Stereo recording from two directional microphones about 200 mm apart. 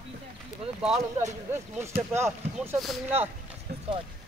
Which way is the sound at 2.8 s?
Centre (ahead or behind).